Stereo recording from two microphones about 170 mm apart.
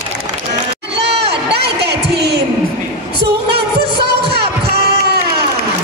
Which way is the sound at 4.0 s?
70° right (ahead or behind).